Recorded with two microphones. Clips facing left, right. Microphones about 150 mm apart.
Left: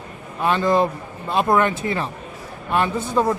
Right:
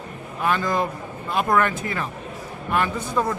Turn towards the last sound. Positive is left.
turn(degrees=25)  # may be behind; listen again after turning